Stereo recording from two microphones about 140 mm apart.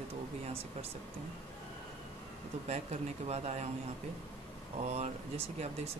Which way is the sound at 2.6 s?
50° right (ahead or behind).